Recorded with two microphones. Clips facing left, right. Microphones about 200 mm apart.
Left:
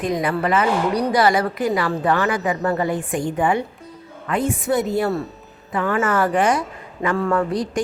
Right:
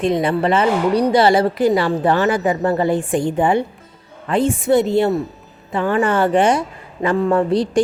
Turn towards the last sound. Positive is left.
turn(degrees=-30)  # may be behind; listen again after turning